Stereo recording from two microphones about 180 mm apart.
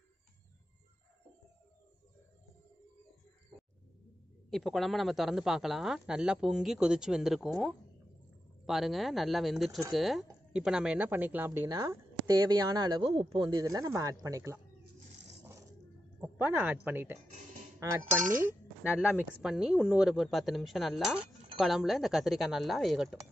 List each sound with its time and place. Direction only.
4.5 s speech: centre (ahead or behind); by 14.6 s 15° right (ahead or behind)
16.2 s speech: 10° right (ahead or behind)
17.7 s dishes: 15° right (ahead or behind)
18.9 s speech: 10° right (ahead or behind)